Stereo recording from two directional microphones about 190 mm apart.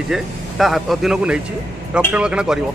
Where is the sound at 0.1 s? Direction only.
Centre (ahead or behind).